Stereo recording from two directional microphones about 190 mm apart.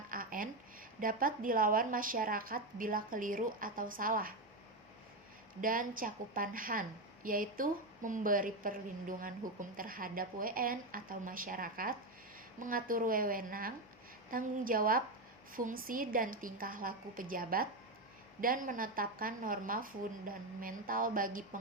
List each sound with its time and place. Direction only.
0.1 s a woman's voice: 45° right (ahead or behind)
5.5 s a woman's voice: 45° right (ahead or behind)